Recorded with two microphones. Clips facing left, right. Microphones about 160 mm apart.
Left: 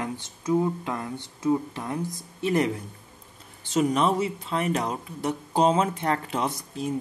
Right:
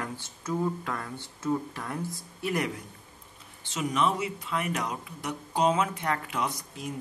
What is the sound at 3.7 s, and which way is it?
Speech, 40° left (ahead or behind).